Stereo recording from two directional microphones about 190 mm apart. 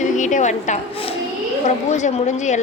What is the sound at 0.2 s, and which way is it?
A woman's voice, 40° left (ahead or behind).